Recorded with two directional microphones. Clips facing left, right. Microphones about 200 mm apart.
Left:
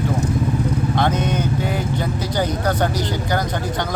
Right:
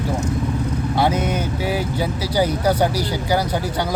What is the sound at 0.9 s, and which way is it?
Speech, 10° right (ahead or behind).